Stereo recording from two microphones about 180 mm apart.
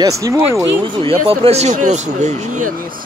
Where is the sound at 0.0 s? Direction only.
20° right (ahead or behind).